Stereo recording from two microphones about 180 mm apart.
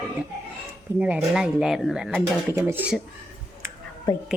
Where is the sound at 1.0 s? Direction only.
5° right (ahead or behind).